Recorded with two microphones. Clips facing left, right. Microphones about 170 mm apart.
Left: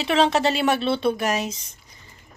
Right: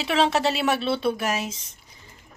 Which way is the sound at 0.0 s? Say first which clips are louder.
Left 2 dB; 5° right (ahead or behind).